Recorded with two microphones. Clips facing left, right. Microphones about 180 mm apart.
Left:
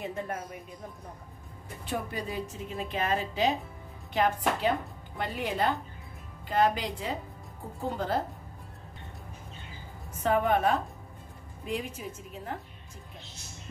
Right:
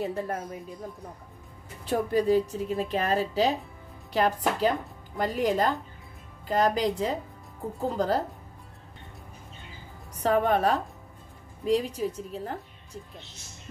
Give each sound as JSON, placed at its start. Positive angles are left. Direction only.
{"t": 0.0, "sound": "speech", "side_deg": -35}
{"t": 1.9, "sound": "a woman's voice", "side_deg": -35}
{"t": 10.1, "sound": "a woman's voice", "side_deg": -35}